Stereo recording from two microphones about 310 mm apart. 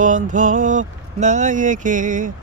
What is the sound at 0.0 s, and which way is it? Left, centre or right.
Vehicle, right.